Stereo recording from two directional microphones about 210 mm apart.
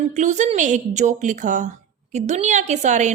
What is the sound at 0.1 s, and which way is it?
A woman's voice, 35° right (ahead or behind).